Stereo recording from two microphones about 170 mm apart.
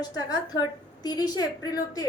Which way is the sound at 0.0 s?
25° left (ahead or behind).